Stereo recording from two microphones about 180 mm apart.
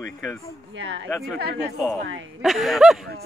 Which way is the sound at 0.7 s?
90° right.